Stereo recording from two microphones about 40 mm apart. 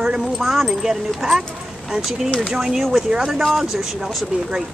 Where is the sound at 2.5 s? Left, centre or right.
Centre.